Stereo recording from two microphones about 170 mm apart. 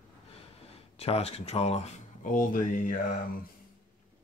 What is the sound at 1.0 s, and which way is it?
Speech, 35° left (ahead or behind).